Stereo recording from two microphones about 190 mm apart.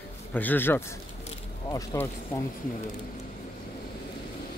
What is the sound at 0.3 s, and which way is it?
Speech, 10° left (ahead or behind).